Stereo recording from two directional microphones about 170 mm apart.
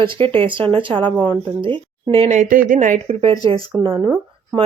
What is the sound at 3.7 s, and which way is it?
Speech, centre (ahead or behind).